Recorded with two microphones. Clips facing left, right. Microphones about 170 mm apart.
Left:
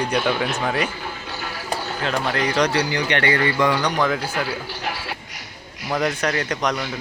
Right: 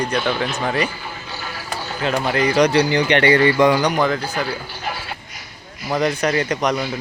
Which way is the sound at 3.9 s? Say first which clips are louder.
Right 2 dB; centre (ahead or behind).